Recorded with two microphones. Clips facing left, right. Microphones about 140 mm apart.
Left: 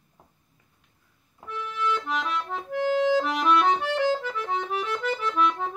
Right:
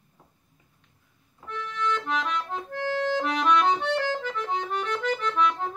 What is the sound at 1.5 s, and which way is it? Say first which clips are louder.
Accordion: left 1 dB; 5° left (ahead or behind).